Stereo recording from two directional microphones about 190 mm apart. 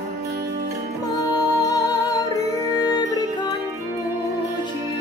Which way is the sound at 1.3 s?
20° left (ahead or behind).